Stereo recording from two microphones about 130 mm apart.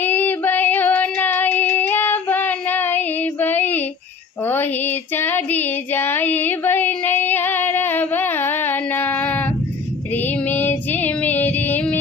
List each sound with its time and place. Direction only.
0.0 s child singing: 15° left (ahead or behind)
10.1 s female singing: 15° left (ahead or behind)